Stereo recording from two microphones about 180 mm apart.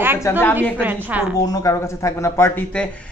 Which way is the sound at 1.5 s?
20° left (ahead or behind).